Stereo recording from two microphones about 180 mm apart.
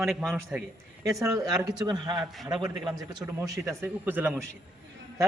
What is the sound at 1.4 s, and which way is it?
Speech, 20° right (ahead or behind).